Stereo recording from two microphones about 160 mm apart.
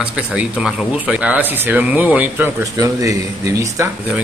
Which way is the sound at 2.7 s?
20° right (ahead or behind).